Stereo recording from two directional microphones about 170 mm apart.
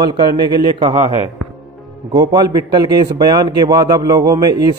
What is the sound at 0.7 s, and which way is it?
A man's voice, 30° right (ahead or behind).